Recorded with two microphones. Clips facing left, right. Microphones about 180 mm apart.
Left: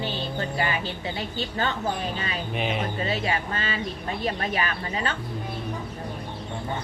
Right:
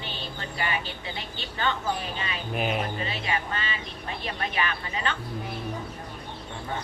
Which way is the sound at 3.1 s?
40° left (ahead or behind).